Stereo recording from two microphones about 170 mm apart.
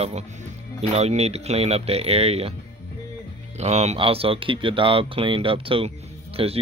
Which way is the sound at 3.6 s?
40° right (ahead or behind).